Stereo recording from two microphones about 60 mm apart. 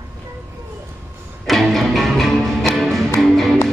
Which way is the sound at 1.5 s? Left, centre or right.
Centre.